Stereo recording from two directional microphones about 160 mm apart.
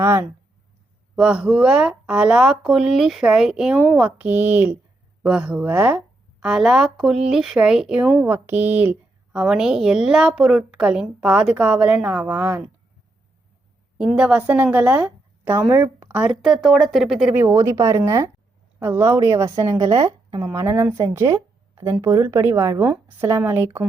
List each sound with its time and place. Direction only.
0.0 s a woman's voice: 15° right (ahead or behind)
14.0 s a woman's voice: 5° right (ahead or behind)
17.4 s a woman's voice: 20° right (ahead or behind)